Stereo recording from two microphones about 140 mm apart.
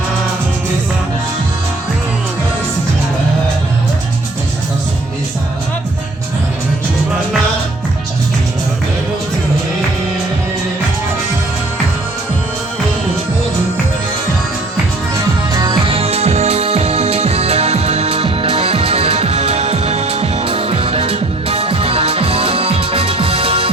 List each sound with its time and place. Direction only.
15.6 s music: 40° right (ahead or behind)